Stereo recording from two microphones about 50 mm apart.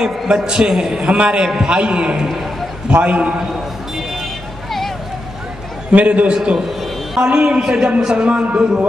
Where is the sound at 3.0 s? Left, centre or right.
Right.